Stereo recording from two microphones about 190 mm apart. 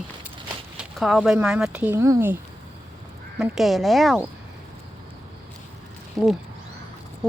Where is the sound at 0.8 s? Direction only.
Centre (ahead or behind).